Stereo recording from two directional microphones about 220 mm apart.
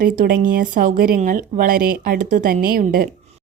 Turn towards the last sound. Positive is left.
turn(degrees=-40)  # may be behind; listen again after turning